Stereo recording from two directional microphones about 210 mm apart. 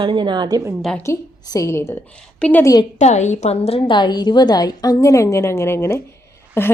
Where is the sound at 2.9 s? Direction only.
35° left (ahead or behind).